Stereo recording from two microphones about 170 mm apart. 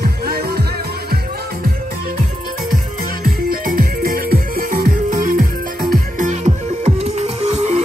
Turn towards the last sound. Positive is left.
turn(degrees=-40)  # may be behind; listen again after turning